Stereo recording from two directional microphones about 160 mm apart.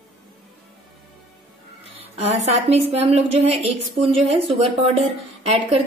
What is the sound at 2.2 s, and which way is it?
A woman's voice, 45° right (ahead or behind).